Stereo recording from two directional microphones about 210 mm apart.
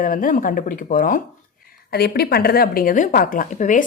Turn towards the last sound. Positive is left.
turn(degrees=40)  # may be behind; listen again after turning